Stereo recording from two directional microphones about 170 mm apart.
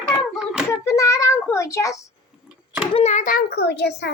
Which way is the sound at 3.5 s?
75° left (ahead or behind).